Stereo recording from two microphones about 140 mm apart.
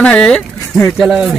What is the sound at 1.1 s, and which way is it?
Speech, 5° right (ahead or behind).